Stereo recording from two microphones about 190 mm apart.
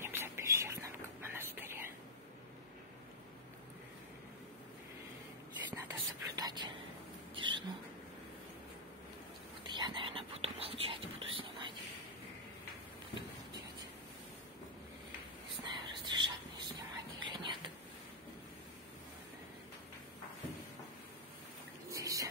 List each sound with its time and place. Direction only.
0.0 s whispering: 15° right (ahead or behind)
5.7 s whispering: 20° right (ahead or behind)
7.3 s rodents: 25° right (ahead or behind)
9.6 s whispering: 25° right (ahead or behind)
15.6 s whispering: 25° right (ahead or behind)
21.9 s a sound: 15° right (ahead or behind)